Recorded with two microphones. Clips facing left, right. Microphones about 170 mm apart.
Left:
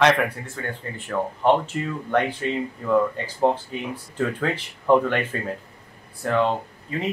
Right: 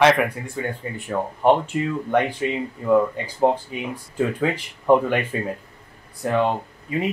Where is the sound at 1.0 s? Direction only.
15° right (ahead or behind).